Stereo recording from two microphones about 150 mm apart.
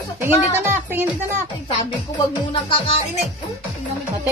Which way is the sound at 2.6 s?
35° left (ahead or behind).